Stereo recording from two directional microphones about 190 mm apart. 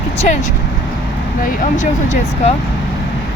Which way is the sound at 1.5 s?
40° left (ahead or behind).